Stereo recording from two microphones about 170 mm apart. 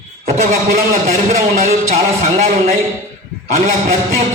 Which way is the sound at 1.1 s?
50° right (ahead or behind).